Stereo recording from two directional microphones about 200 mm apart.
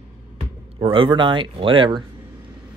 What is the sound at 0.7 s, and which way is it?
Speech, 25° right (ahead or behind).